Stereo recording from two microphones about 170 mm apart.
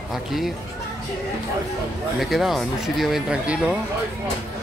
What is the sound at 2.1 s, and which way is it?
Speech, centre (ahead or behind).